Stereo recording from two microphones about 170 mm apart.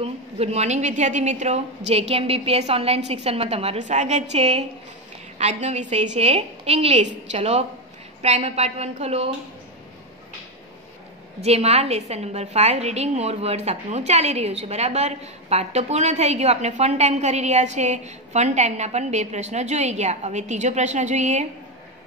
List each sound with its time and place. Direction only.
0.0 s a woman's voice: 35° right (ahead or behind)
11.4 s a woman's voice: 40° right (ahead or behind)